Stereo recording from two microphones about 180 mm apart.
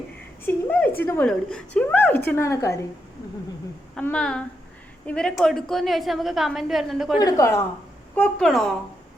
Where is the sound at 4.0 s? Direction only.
5° left (ahead or behind).